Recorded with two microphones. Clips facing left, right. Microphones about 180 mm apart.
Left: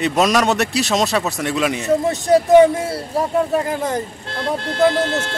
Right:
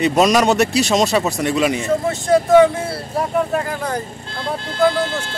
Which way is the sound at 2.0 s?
20° left (ahead or behind).